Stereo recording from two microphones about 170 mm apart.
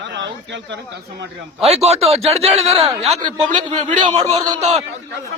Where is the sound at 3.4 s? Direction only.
45° right (ahead or behind).